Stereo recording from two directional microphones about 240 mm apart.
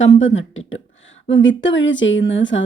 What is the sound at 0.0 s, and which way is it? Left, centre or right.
A woman's voice, left.